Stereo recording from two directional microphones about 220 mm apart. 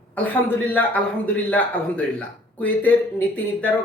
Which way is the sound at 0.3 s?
5° left (ahead or behind).